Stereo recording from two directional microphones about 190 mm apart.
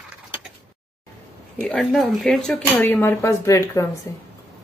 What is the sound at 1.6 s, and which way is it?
Speech, centre (ahead or behind).